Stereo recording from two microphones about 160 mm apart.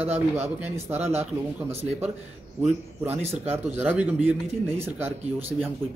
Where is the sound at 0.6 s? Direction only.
15° right (ahead or behind).